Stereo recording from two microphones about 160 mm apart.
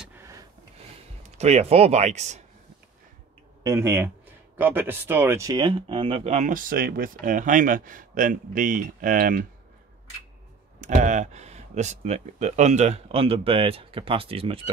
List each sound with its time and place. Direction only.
1.2 s speech: 45° right (ahead or behind)
3.6 s speech: 20° right (ahead or behind); by 9.5 s 55° right (ahead or behind)
10.8 s speech: 50° right (ahead or behind)